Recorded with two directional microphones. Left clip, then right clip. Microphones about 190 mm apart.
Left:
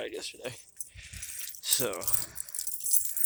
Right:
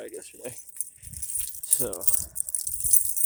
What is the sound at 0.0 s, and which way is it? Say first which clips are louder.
Keys jangling: left 2 dB; 20° right (ahead or behind).